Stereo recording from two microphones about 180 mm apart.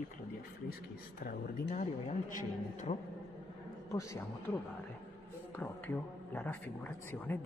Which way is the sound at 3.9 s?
15° left (ahead or behind).